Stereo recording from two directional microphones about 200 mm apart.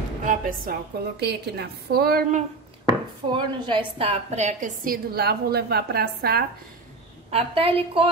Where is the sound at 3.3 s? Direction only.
25° right (ahead or behind); by 6.4 s 50° right (ahead or behind).